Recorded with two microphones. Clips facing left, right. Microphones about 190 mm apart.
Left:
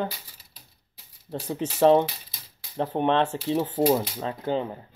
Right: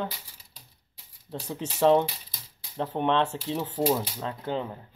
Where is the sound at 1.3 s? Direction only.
5° left (ahead or behind).